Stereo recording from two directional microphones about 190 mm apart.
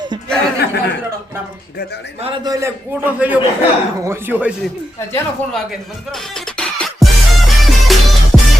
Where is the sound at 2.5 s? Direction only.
15° right (ahead or behind).